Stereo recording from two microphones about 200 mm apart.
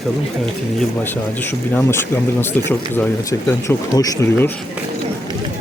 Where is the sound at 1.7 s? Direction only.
10° left (ahead or behind).